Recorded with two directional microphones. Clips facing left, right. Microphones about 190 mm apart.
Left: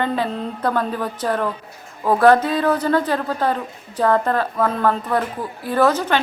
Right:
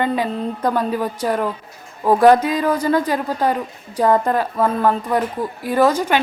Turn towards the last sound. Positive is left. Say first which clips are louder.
# right 1 dB
turn(degrees=-10)  # may be behind; listen again after turning